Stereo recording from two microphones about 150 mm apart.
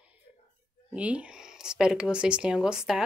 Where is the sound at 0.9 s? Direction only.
10° right (ahead or behind).